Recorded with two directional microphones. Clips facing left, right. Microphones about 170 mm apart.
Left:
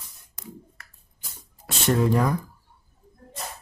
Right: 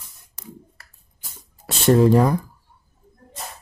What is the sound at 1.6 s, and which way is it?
Speech, 30° right (ahead or behind).